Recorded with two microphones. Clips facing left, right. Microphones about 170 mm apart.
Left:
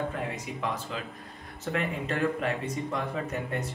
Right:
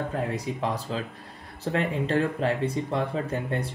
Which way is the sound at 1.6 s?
30° right (ahead or behind).